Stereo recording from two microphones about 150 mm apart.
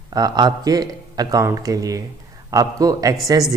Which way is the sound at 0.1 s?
25° right (ahead or behind).